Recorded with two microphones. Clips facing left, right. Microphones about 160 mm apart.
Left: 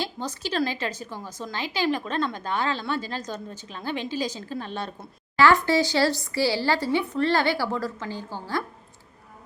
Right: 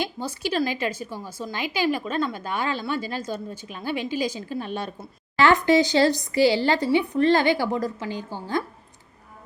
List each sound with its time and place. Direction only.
0.0 s a woman's voice: 10° right (ahead or behind)